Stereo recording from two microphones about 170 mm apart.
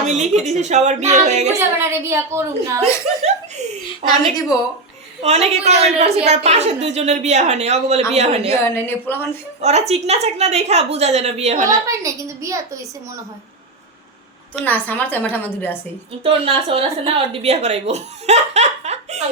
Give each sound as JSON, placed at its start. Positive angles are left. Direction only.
{"t": 0.0, "sound": "speech", "side_deg": -40}
{"t": 1.5, "sound": "a woman's voice", "side_deg": -15}
{"t": 4.0, "sound": "a woman's voice", "side_deg": 20}
{"t": 5.2, "sound": "a woman's voice", "side_deg": -40}
{"t": 8.6, "sound": "a woman's voice", "side_deg": 15}
{"t": 9.6, "sound": "a woman's voice", "side_deg": -40}
{"t": 11.9, "sound": "a woman's voice", "side_deg": -20}
{"t": 14.6, "sound": "a woman's voice", "side_deg": 10}
{"t": 16.2, "sound": "a woman's voice", "side_deg": -35}